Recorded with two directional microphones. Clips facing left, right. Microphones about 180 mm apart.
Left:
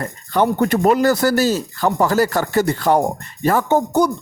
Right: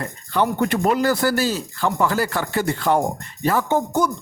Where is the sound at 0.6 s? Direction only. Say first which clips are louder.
Left 5 dB; 40° left (ahead or behind).